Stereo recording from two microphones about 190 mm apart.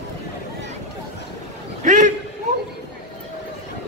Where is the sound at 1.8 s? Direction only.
40° right (ahead or behind).